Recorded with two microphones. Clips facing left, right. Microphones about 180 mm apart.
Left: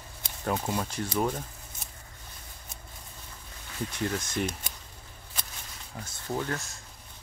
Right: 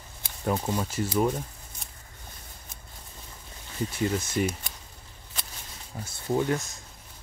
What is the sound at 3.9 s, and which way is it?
Speech, 5° right (ahead or behind).